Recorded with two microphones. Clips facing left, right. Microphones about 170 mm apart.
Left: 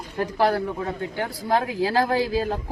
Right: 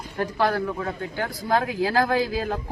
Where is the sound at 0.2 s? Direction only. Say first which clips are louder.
Left 2 dB; 30° left (ahead or behind).